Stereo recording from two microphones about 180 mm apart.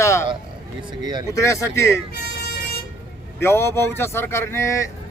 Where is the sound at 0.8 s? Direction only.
25° right (ahead or behind).